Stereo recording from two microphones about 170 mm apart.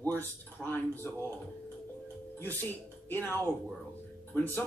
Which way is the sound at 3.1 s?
10° left (ahead or behind).